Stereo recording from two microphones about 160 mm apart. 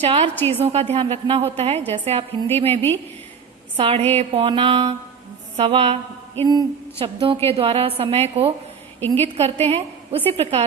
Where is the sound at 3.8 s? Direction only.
35° right (ahead or behind).